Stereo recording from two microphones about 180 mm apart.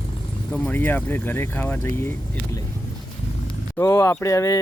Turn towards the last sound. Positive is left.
turn(degrees=15)  # may be behind; listen again after turning